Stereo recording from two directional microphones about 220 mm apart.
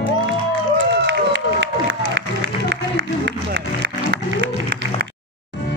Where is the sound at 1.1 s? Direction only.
55° right (ahead or behind).